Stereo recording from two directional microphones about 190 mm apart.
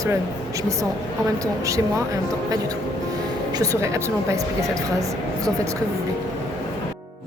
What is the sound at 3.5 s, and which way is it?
Speech, 15° right (ahead or behind).